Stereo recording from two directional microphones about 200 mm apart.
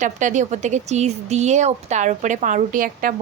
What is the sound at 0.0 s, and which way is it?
Speech, 40° right (ahead or behind).